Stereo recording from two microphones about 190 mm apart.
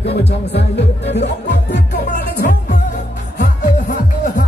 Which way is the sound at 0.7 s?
65° left (ahead or behind).